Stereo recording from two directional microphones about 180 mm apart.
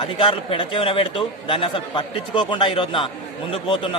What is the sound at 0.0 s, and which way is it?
A man's voice, 25° left (ahead or behind).